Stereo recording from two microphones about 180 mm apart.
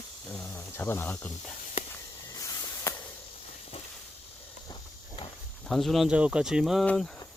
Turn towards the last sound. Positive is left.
turn(degrees=0)  # may be behind; listen again after turning